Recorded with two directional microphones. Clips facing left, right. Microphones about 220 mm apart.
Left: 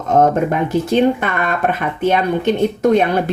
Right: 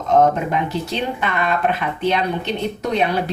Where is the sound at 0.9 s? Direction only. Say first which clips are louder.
Left 9 dB; 50° left (ahead or behind).